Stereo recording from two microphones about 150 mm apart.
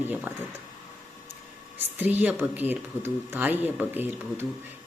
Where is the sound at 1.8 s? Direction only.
10° right (ahead or behind).